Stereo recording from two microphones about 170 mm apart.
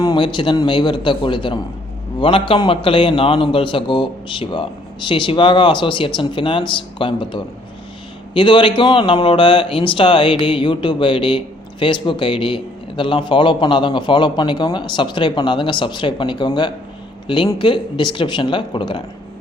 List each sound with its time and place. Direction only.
0.0 s a man's voice: 25° left (ahead or behind)